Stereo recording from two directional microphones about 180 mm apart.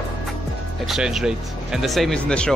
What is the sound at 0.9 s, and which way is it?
Speech, centre (ahead or behind).